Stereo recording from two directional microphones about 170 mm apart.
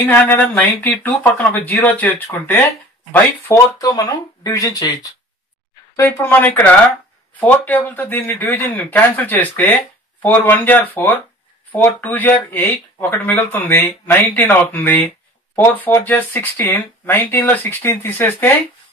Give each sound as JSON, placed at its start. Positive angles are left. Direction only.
{"t": 0.0, "sound": "speech", "side_deg": 10}
{"t": 3.7, "sound": "speech", "side_deg": 20}